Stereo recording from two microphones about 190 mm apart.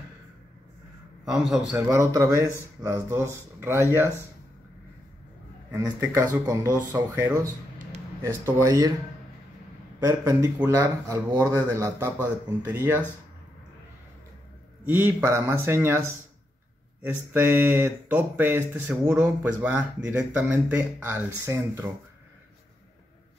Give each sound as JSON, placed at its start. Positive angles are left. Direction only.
{"t": 1.2, "sound": "a man's voice", "side_deg": 0}
{"t": 5.7, "sound": "speech", "side_deg": -15}
{"t": 7.8, "sound": "a sound", "side_deg": -45}
{"t": 8.5, "sound": "speech", "side_deg": -15}
{"t": 10.0, "sound": "speech", "side_deg": -15}
{"t": 14.9, "sound": "speech", "side_deg": -10}